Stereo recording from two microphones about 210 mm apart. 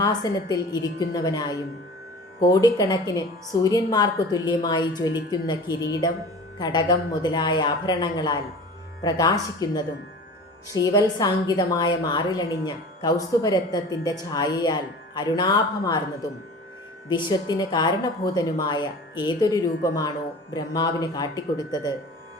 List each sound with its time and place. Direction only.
0.0 s a woman's voice: 15° left (ahead or behind)